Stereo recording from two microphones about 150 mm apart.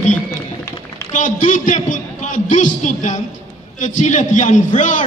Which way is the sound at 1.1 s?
55° left (ahead or behind).